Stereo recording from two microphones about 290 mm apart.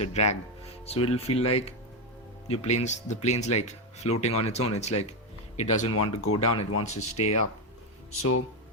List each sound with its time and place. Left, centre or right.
0.0 s speech: left
2.5 s speech: left
5.9 s speech: left
6.8 s speech: left
8.2 s speech: left